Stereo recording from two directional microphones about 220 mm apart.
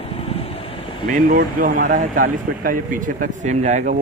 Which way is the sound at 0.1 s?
25° left (ahead or behind).